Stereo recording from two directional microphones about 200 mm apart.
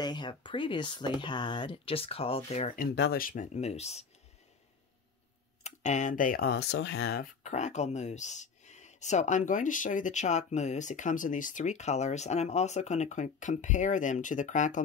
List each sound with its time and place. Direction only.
0.0 s speech: 20° left (ahead or behind)
5.6 s speech: 35° left (ahead or behind); by 7.1 s 70° left (ahead or behind)
7.4 s speech: 35° left (ahead or behind)